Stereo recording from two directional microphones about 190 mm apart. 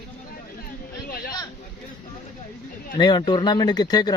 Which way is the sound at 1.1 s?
50° left (ahead or behind).